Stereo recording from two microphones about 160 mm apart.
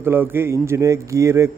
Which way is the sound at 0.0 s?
15° right (ahead or behind).